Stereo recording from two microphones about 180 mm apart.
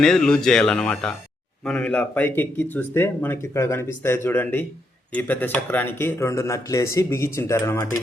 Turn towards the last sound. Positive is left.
turn(degrees=15)  # may be behind; listen again after turning